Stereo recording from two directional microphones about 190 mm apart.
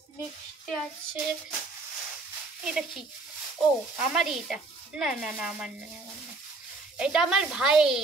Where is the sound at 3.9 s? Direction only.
5° right (ahead or behind).